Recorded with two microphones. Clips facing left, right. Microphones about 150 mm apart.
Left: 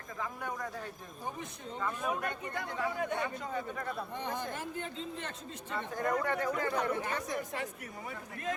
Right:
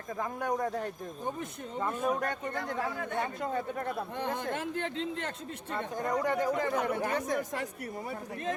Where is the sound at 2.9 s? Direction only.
20° left (ahead or behind).